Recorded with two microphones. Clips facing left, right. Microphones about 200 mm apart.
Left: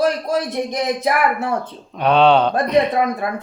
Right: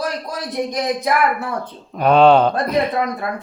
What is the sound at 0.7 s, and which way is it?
Speech, 25° left (ahead or behind).